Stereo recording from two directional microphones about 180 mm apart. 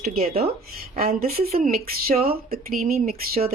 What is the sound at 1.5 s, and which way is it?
Speech, 55° right (ahead or behind).